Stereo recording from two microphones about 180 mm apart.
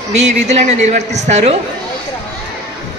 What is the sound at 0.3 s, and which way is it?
A man's voice, 40° right (ahead or behind).